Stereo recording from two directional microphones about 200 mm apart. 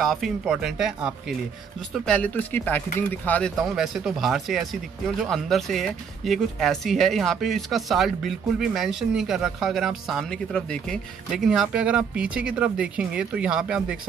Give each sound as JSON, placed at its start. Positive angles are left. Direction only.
{"t": 0.0, "sound": "speech", "side_deg": 0}